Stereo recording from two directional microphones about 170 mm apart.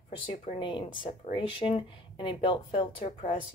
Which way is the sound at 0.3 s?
30° left (ahead or behind).